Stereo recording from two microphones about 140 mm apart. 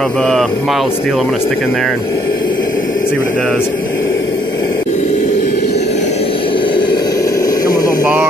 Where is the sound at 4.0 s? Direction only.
25° left (ahead or behind).